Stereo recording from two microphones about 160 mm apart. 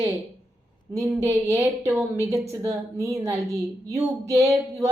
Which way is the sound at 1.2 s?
15° right (ahead or behind).